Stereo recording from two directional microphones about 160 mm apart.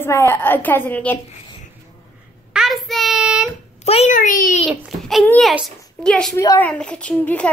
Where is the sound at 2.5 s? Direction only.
Centre (ahead or behind).